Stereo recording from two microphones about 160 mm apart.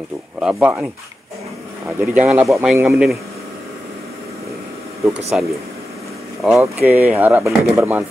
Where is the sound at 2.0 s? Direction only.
5° right (ahead or behind).